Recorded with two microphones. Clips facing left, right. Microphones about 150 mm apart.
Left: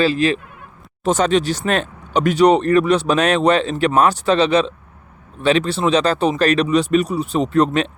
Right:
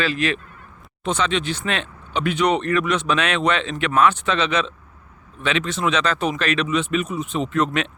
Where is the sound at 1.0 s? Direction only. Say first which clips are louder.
Left 6 dB; 45° left (ahead or behind).